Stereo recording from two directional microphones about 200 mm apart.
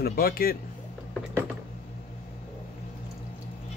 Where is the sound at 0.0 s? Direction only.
50° left (ahead or behind).